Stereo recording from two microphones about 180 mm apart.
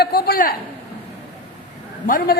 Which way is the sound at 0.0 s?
60° left (ahead or behind).